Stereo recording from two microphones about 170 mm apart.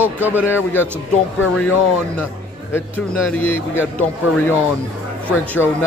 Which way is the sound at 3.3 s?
10° left (ahead or behind).